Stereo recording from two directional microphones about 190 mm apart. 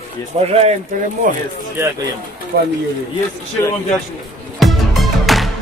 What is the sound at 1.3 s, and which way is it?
Speech, 45° right (ahead or behind).